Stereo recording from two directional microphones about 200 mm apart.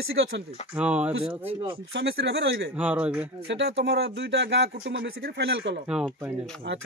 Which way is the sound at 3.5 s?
60° right (ahead or behind).